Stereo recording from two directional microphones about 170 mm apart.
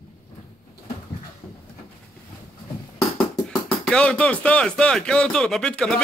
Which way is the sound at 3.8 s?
5° left (ahead or behind).